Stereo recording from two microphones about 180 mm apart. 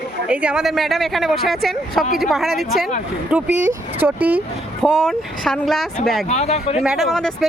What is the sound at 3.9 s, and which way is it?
Speech, 10° right (ahead or behind).